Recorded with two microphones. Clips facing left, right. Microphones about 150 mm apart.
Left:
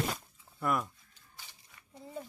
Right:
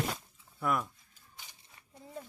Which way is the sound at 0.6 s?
Centre (ahead or behind).